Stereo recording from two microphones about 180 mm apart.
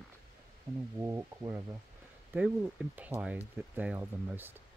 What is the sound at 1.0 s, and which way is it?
Speech, 15° right (ahead or behind).